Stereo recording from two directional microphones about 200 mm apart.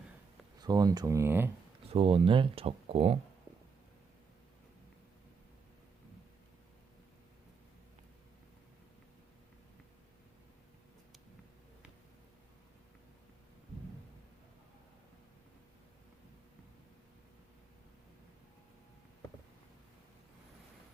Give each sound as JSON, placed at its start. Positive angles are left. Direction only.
{"t": 0.6, "sound": "speech", "side_deg": -20}
{"t": 1.9, "sound": "speech", "side_deg": -30}